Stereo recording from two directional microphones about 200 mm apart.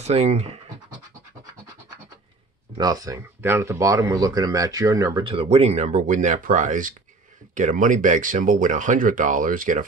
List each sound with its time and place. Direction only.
0.0 s speech: 35° right (ahead or behind)
2.8 s speech: 20° right (ahead or behind)
5.2 s speech: 30° right (ahead or behind)